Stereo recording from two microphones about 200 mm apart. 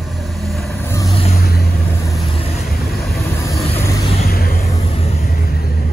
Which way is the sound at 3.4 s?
15° left (ahead or behind).